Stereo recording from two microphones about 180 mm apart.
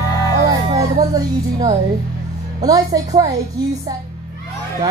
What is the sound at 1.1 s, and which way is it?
Speech, 20° right (ahead or behind).